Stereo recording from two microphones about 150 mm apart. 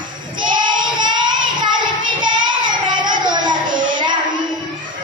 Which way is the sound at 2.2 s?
30° right (ahead or behind).